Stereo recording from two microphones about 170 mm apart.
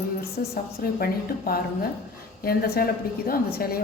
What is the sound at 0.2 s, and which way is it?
A woman's voice, 60° left (ahead or behind).